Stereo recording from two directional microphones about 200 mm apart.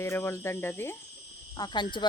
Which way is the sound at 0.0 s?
10° left (ahead or behind).